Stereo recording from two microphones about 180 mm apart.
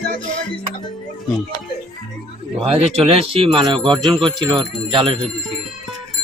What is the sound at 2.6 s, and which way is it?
Speech, 35° right (ahead or behind).